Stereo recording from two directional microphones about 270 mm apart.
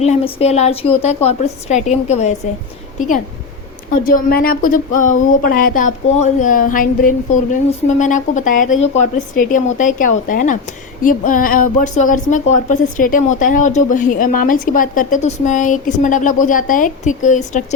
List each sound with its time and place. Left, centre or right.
0.0 s a woman's voice: left
4.0 s a sound: left
7.5 s a woman's voice: left